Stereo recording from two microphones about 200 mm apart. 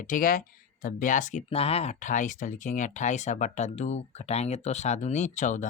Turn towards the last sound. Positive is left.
turn(degrees=35)  # may be behind; listen again after turning